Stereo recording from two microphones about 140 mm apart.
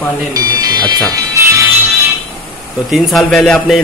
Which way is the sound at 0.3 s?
25° right (ahead or behind).